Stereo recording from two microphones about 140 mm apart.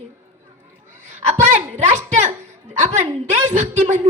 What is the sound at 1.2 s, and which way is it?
A woman's voice, 55° right (ahead or behind).